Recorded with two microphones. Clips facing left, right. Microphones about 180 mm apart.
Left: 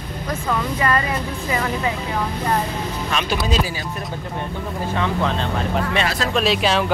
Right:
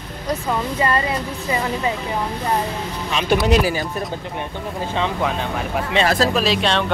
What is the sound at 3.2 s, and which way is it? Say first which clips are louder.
Speech: right 9 dB; 65° right (ahead or behind).